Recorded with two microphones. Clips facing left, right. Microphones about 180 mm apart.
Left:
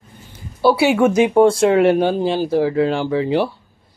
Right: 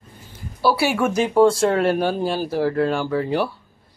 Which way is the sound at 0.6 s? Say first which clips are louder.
Left 5 dB; 20° left (ahead or behind).